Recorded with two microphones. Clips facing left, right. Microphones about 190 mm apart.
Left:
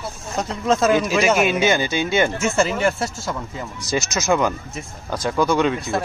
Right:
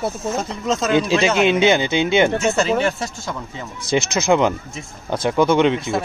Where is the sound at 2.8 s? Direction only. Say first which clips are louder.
Left 1 dB; 5° left (ahead or behind).